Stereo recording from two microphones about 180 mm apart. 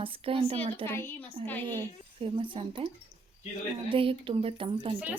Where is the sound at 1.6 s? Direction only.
25° right (ahead or behind).